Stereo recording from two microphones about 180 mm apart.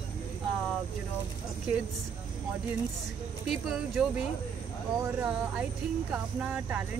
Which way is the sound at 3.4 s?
Centre (ahead or behind).